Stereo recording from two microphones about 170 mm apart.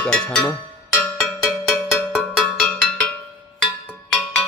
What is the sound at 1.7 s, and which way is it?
Cowbell, 5° right (ahead or behind).